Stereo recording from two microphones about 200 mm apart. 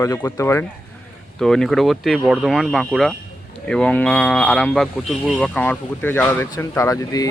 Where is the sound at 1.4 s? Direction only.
Centre (ahead or behind).